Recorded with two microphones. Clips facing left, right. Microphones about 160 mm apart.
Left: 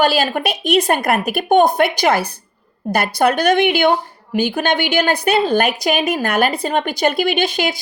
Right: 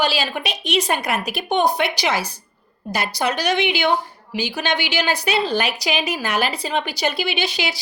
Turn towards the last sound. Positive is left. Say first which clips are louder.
# left 6 dB
turn(degrees=50)  # may be behind; listen again after turning